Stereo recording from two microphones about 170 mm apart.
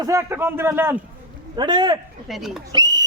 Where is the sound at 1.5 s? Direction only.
25° right (ahead or behind).